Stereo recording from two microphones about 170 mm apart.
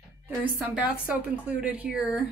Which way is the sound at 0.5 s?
5° right (ahead or behind).